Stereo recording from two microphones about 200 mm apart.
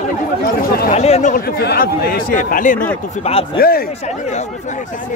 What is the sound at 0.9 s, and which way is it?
Speech, 35° left (ahead or behind).